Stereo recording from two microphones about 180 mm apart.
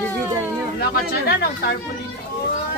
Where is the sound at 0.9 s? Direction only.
60° left (ahead or behind).